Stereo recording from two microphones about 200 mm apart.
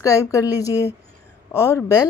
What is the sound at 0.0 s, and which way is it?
A woman's voice, 15° left (ahead or behind).